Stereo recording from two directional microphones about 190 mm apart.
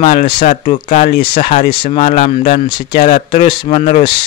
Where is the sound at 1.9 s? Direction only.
35° left (ahead or behind).